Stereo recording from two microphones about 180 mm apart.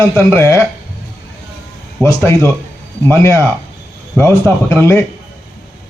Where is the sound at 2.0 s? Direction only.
15° left (ahead or behind).